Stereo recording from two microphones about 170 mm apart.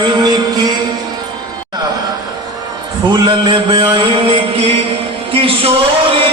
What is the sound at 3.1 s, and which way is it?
Music, 25° right (ahead or behind).